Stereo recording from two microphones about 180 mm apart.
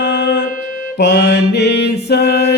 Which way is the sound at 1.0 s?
70° left (ahead or behind).